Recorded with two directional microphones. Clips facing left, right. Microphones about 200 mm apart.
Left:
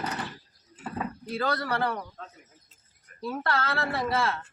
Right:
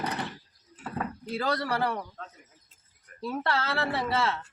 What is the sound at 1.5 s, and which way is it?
Speech, 10° right (ahead or behind).